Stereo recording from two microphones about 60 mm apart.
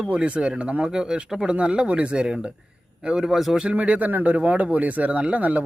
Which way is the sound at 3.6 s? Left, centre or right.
Right.